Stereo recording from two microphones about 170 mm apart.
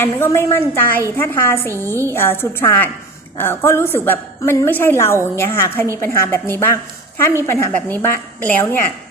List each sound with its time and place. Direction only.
0.0 s a woman's voice: 15° left (ahead or behind)
1.7 s a woman's voice: 15° right (ahead or behind)
2.1 s a woman's voice: 15° left (ahead or behind)